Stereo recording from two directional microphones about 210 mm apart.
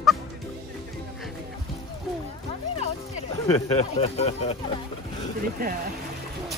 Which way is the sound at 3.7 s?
30° left (ahead or behind).